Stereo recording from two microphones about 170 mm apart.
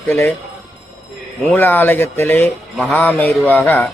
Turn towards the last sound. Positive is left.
turn(degrees=10)  # may be behind; listen again after turning